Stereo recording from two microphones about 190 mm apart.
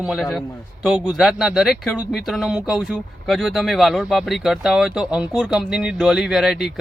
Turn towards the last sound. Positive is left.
turn(degrees=0)  # may be behind; listen again after turning